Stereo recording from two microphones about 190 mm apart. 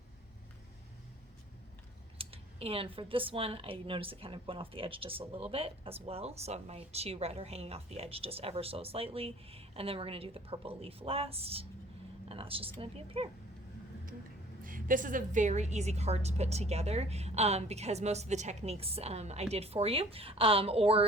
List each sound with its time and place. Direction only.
2.1 s speech: 30° right (ahead or behind)
14.6 s speech: 45° right (ahead or behind); by 21.1 s 30° right (ahead or behind)